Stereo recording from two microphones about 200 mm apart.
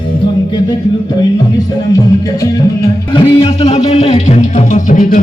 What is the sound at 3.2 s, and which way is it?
Music, 30° left (ahead or behind).